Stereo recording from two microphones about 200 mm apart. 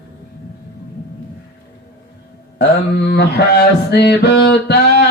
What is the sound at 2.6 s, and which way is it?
Mantra, 60° left (ahead or behind).